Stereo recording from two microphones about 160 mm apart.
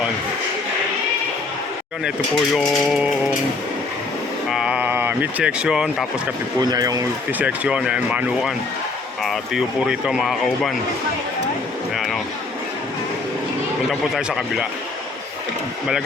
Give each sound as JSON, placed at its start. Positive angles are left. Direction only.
{"t": 2.6, "sound": "speech", "side_deg": 0}
{"t": 4.4, "sound": "speech", "side_deg": -5}
{"t": 6.6, "sound": "speech", "side_deg": -25}
{"t": 7.3, "sound": "speech", "side_deg": -10}
{"t": 11.9, "sound": "a sound", "side_deg": 0}
{"t": 14.2, "sound": "speech", "side_deg": -5}